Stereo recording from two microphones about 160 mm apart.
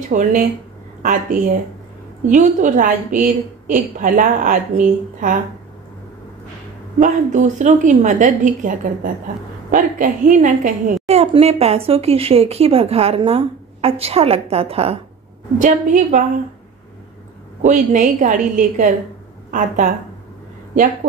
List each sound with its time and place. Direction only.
0.1 s a woman's voice: 55° right (ahead or behind)
7.0 s a woman's voice: 50° right (ahead or behind)
11.1 s speech: 40° right (ahead or behind)
15.6 s a woman's voice: 60° right (ahead or behind)
17.6 s a woman's voice: 55° right (ahead or behind)
20.7 s a woman's voice: 55° right (ahead or behind)